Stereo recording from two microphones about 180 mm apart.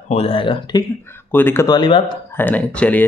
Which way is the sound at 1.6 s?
25° left (ahead or behind).